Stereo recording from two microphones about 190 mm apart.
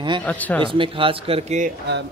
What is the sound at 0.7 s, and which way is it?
Speech, 30° right (ahead or behind).